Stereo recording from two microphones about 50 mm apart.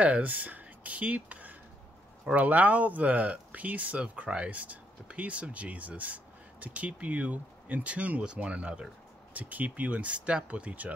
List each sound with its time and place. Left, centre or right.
0.0 s speech: right